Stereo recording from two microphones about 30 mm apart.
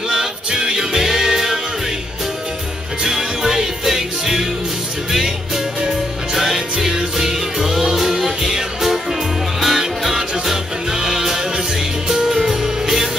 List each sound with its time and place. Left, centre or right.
0.5 s music: right
1.0 s music: centre
3.0 s music: centre
5.9 s music: centre
10.9 s music: right